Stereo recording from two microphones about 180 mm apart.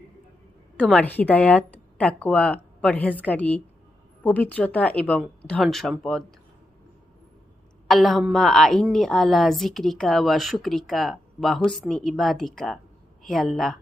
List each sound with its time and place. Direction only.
0.8 s a woman's voice: 5° left (ahead or behind)
7.9 s a woman's voice: centre (ahead or behind)